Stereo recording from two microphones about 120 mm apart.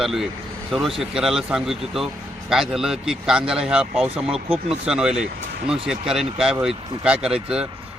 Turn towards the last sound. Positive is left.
turn(degrees=-5)  # may be behind; listen again after turning